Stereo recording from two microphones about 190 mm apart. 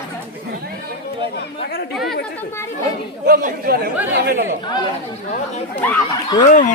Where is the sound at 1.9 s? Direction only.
Centre (ahead or behind).